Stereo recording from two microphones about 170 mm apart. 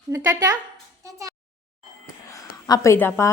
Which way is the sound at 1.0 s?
20° right (ahead or behind).